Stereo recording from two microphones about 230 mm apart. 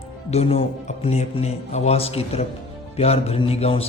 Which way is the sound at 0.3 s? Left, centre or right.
Left.